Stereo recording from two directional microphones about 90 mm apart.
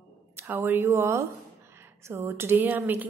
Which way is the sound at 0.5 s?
25° right (ahead or behind).